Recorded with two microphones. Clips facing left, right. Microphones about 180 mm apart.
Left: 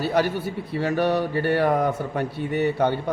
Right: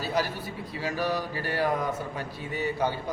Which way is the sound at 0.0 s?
65° left (ahead or behind).